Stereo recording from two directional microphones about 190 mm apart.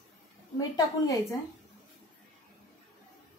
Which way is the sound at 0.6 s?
20° left (ahead or behind).